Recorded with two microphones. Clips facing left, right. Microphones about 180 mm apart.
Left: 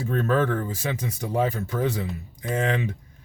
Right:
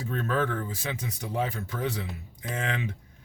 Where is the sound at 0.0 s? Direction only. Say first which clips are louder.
Left 5 dB; 45° left (ahead or behind).